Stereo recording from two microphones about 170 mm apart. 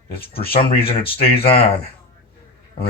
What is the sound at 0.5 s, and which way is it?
Speech, 35° left (ahead or behind).